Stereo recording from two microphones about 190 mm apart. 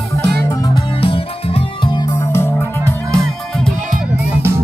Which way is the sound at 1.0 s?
30° left (ahead or behind).